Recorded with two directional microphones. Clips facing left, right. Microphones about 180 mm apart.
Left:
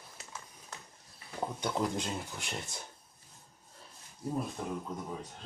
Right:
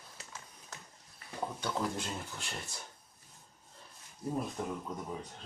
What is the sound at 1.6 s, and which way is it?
Speech, 15° left (ahead or behind).